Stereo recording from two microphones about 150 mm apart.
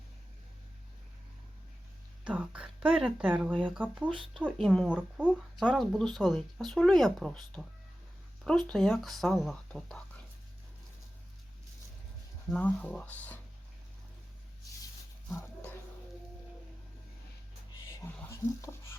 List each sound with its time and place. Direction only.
2.2 s speech: 5° right (ahead or behind)
4.5 s speech: centre (ahead or behind)
12.5 s speech: 10° left (ahead or behind)
15.4 s dog: 15° left (ahead or behind)
17.8 s a sound: 15° left (ahead or behind)